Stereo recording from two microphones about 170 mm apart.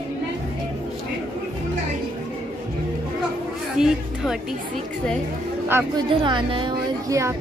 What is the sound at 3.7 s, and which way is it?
Speech, 5° right (ahead or behind).